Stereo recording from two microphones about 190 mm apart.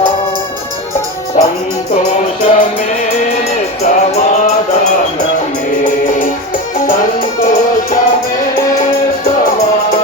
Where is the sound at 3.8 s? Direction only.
35° left (ahead or behind).